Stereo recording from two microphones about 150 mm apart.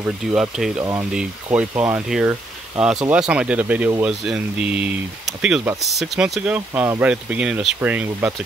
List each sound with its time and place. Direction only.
0.0 s speech: 5° right (ahead or behind)